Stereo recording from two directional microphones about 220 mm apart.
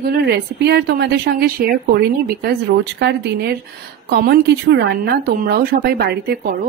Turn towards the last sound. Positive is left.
turn(degrees=-40)  # may be behind; listen again after turning